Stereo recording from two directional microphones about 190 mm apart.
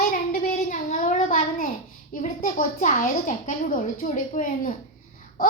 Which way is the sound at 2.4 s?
45° left (ahead or behind).